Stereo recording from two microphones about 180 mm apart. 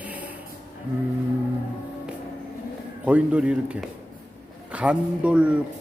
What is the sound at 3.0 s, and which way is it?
Speech, 5° right (ahead or behind).